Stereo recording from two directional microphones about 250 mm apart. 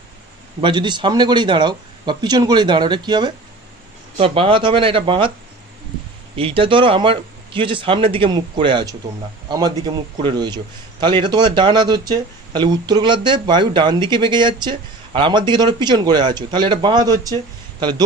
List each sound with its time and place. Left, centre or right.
0.6 s a man's voice: centre
6.3 s a man's voice: right